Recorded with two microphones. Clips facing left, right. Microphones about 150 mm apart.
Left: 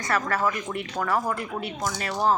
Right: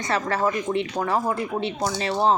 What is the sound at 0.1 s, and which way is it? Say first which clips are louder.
Speech: right 2 dB; 25° right (ahead or behind).